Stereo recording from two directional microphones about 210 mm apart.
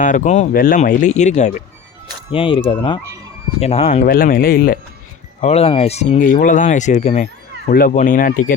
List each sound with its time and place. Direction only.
0.0 s speech: 35° left (ahead or behind)
2.3 s speech: 25° left (ahead or behind)
4.0 s speech: 45° left (ahead or behind)
5.4 s speech: 30° left (ahead or behind)